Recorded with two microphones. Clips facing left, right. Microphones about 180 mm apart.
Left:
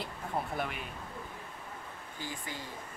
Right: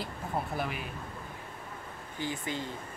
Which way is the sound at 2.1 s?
20° right (ahead or behind).